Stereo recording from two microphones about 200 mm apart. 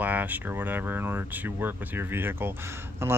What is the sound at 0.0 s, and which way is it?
Speech, 10° right (ahead or behind).